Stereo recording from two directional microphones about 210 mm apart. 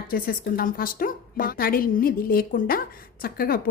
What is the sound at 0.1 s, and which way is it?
A woman's voice, 45° left (ahead or behind).